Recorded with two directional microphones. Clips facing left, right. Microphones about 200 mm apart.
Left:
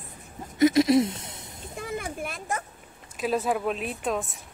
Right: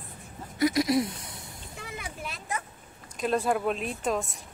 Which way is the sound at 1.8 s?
50° left (ahead or behind).